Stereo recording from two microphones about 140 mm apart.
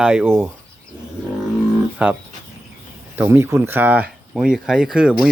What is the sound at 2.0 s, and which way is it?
Speech, 10° right (ahead or behind).